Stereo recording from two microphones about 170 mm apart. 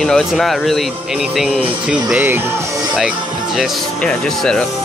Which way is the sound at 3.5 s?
5° left (ahead or behind).